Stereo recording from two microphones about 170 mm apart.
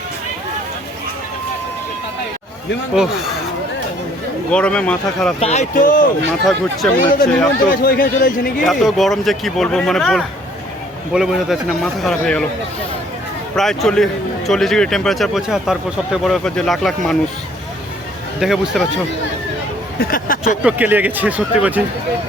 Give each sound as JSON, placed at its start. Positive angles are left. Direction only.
{"t": 2.9, "sound": "a man's voice", "side_deg": 0}
{"t": 4.5, "sound": "a man's voice", "side_deg": 5}
{"t": 5.4, "sound": "speech", "side_deg": 40}
{"t": 6.4, "sound": "a man's voice", "side_deg": 0}
{"t": 7.7, "sound": "a man's voice", "side_deg": 60}
{"t": 8.6, "sound": "a man's voice", "side_deg": 0}
{"t": 13.6, "sound": "a man's voice", "side_deg": 5}
{"t": 18.3, "sound": "a man's voice", "side_deg": -5}
{"t": 20.0, "sound": "a man's voice", "side_deg": 55}
{"t": 20.6, "sound": "speech", "side_deg": -10}